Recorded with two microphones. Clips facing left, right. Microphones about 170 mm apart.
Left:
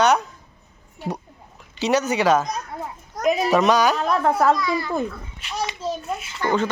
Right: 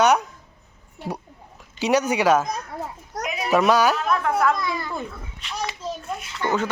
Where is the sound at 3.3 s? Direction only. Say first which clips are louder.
Left 10 dB; 35° left (ahead or behind).